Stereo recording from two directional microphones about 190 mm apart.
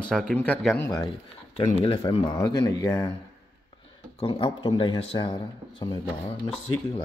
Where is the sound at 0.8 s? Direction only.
15° left (ahead or behind).